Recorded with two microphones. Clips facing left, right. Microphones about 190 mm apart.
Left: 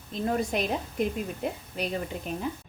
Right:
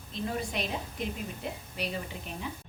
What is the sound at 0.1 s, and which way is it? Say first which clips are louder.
Speech: left 6 dB; 45° left (ahead or behind).